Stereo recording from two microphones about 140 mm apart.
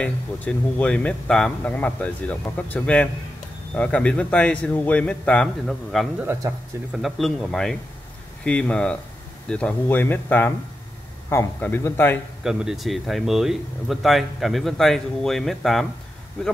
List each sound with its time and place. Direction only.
0.0 s a man's voice: 10° left (ahead or behind)
12.4 s speech: 5° right (ahead or behind)